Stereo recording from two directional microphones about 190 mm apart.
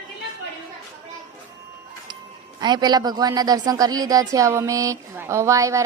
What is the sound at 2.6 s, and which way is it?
Speech, 20° right (ahead or behind).